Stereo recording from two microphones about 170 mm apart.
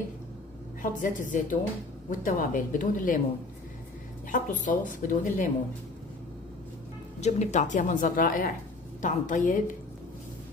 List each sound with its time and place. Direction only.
1.0 s a woman's voice: 50° left (ahead or behind)
4.3 s a woman's voice: 50° left (ahead or behind)
7.2 s a woman's voice: 40° left (ahead or behind)